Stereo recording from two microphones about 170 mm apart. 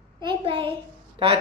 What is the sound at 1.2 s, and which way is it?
Speech, 30° right (ahead or behind).